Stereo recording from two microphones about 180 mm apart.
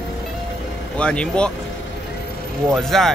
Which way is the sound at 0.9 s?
5° left (ahead or behind).